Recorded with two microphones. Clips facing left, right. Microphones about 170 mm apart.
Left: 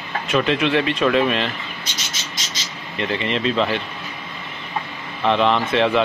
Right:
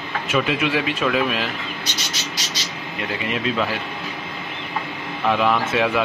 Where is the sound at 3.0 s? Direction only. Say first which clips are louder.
Left 3 dB; 5° right (ahead or behind).